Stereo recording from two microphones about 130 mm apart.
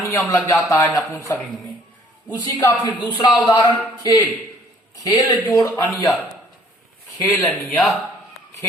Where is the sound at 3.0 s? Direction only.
35° left (ahead or behind).